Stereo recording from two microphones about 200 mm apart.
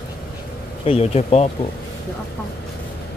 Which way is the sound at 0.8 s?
30° left (ahead or behind).